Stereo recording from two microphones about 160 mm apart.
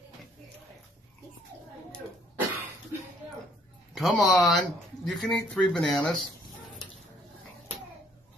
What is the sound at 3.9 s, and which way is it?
Speech, centre (ahead or behind).